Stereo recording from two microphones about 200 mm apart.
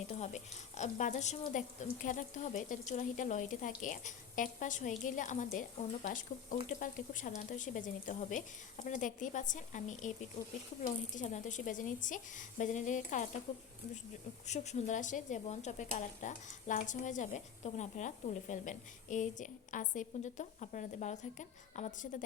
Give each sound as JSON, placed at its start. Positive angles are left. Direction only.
{"t": 0.1, "sound": "speech", "side_deg": 35}